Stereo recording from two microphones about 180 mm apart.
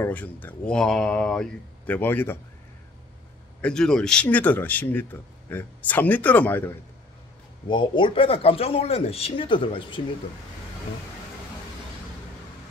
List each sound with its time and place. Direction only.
0.0 s speech: 10° left (ahead or behind)
3.6 s speech: 5° left (ahead or behind)
7.6 s speech: 25° left (ahead or behind)